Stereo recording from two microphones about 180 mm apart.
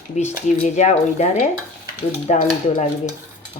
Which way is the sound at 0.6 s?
40° left (ahead or behind).